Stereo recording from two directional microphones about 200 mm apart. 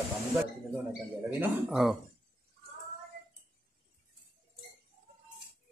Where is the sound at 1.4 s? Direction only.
Centre (ahead or behind).